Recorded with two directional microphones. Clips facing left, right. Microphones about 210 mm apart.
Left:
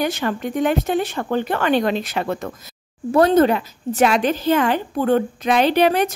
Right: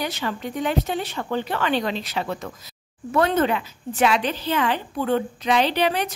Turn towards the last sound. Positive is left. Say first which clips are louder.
# left 6 dB
turn(degrees=50)  # may be behind; listen again after turning